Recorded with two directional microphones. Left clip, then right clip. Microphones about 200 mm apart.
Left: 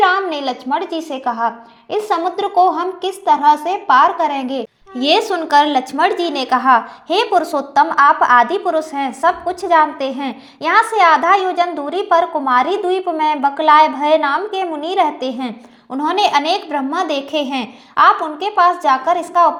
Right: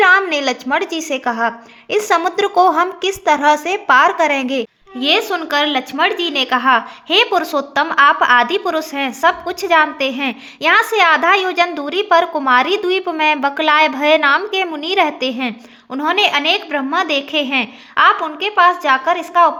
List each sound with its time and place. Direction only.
0.0 s a woman's voice: 30° right (ahead or behind)
4.9 s a woman's voice: centre (ahead or behind)